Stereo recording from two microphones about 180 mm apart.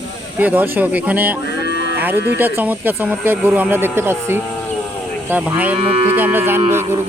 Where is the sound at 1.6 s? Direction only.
60° left (ahead or behind).